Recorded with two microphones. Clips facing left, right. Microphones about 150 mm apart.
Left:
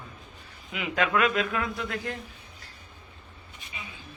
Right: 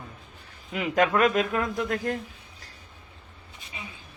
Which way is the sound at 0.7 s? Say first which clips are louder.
Right 4 dB; 40° right (ahead or behind).